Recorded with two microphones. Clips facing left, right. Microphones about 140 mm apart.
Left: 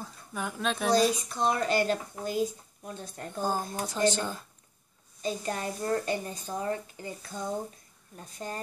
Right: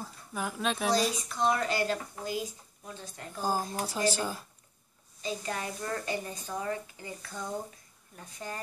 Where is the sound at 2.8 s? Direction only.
45° left (ahead or behind).